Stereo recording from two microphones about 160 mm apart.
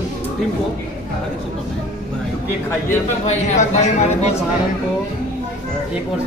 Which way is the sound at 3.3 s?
45° left (ahead or behind).